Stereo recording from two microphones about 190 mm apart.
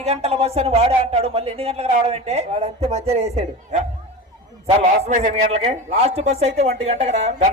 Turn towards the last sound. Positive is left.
turn(degrees=-30)  # may be behind; listen again after turning